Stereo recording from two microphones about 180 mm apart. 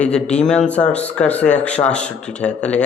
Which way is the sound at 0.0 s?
5° left (ahead or behind).